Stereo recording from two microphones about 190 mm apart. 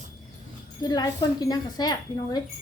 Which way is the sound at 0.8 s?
20° left (ahead or behind).